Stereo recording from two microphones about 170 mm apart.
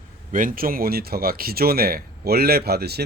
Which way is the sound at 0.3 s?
55° right (ahead or behind).